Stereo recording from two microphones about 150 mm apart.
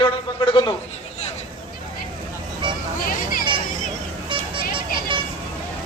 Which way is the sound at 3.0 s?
70° left (ahead or behind).